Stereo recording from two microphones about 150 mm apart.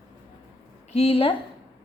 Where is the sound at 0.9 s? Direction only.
40° left (ahead or behind).